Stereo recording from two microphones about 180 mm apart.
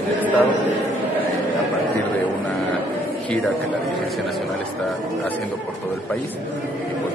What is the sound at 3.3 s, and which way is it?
A man's voice, 5° left (ahead or behind).